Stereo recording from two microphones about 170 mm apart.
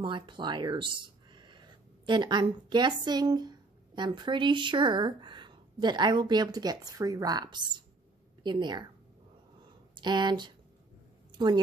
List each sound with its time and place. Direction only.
0.0 s a woman's voice: 25° right (ahead or behind)
9.9 s a woman's voice: 25° right (ahead or behind)